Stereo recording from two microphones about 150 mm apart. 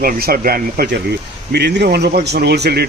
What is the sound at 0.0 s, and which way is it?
Speech, 85° right.